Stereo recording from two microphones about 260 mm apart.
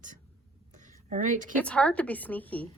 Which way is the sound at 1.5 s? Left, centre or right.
Centre.